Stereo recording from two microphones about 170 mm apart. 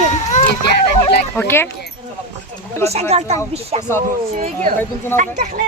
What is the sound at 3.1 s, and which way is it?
Speech, 40° right (ahead or behind).